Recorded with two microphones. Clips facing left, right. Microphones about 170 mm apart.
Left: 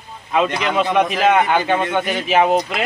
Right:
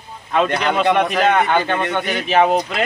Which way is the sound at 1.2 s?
5° left (ahead or behind).